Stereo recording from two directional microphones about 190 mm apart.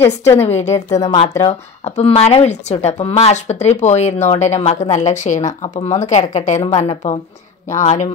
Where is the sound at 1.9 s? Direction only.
35° left (ahead or behind).